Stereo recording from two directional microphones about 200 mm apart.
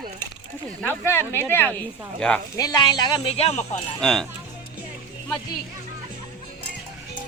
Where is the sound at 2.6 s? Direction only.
20° left (ahead or behind); by 3.8 s 35° left (ahead or behind).